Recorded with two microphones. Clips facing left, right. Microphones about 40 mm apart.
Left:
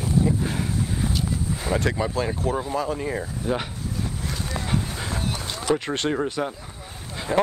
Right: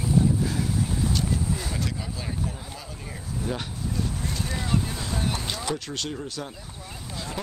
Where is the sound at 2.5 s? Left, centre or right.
Left.